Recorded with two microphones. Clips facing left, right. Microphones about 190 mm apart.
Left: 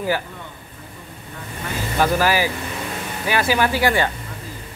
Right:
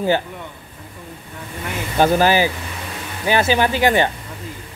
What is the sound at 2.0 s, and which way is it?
A man's voice, 25° right (ahead or behind).